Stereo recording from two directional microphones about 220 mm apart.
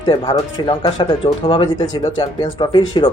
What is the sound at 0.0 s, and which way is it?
Speech, 20° left (ahead or behind).